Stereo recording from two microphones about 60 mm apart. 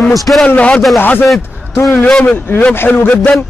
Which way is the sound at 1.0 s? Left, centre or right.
Left.